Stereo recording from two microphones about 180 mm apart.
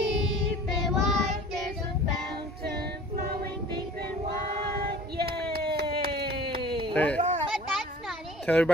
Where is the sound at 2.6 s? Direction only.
60° right (ahead or behind).